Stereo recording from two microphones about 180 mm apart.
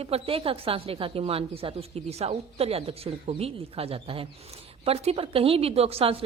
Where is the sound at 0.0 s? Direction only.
30° right (ahead or behind).